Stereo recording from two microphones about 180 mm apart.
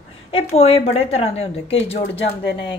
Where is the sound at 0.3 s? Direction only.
35° left (ahead or behind).